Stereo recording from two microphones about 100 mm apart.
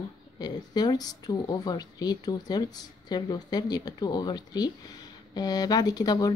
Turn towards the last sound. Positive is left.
turn(degrees=40)  # may be behind; listen again after turning